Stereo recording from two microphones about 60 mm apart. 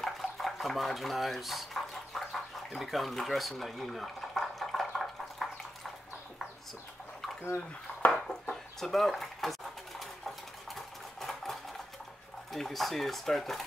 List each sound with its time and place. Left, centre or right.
0.0 s dishes: centre
2.7 s boiling: centre
7.4 s speech: left
8.1 s a sound: centre
12.5 s speech: centre